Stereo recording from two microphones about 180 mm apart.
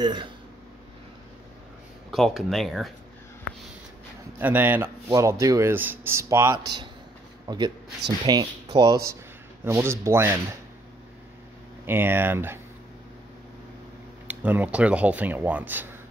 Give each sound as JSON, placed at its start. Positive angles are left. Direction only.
{"t": 0.0, "sound": "speech", "side_deg": -25}
{"t": 2.0, "sound": "speech", "side_deg": 0}
{"t": 4.4, "sound": "speech", "side_deg": -10}
{"t": 11.8, "sound": "speech", "side_deg": -10}
{"t": 14.2, "sound": "speech", "side_deg": -10}